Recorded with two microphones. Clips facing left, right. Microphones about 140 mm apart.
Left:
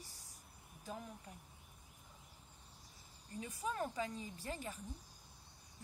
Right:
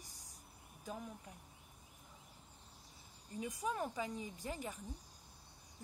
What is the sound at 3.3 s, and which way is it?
Speech, 15° right (ahead or behind).